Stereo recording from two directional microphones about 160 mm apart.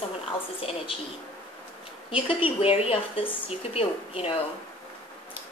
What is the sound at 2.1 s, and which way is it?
A woman's voice, 35° left (ahead or behind).